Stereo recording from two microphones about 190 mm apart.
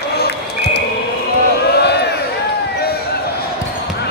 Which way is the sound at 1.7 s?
60° left (ahead or behind).